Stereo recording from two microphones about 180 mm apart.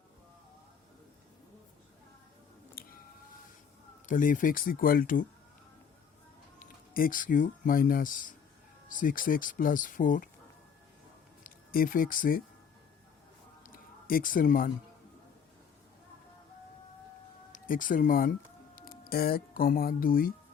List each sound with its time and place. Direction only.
2.8 s music: 55° left (ahead or behind)
4.0 s speech: 50° left (ahead or behind)
6.6 s speech: 50° left (ahead or behind)
11.4 s speech: 50° left (ahead or behind)
13.7 s a sound: 50° left (ahead or behind)
17.5 s speech: 50° left (ahead or behind)